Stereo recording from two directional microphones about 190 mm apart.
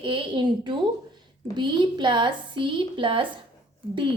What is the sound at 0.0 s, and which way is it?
A woman's voice, 25° right (ahead or behind).